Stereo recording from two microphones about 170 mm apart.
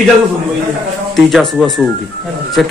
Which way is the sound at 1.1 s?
Centre (ahead or behind).